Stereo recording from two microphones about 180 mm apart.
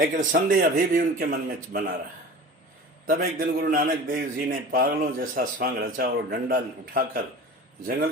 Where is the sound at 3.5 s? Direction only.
50° right (ahead or behind).